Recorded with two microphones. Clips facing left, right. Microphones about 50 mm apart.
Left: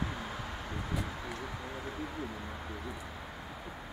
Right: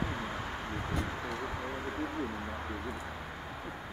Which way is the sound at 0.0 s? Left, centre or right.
Centre.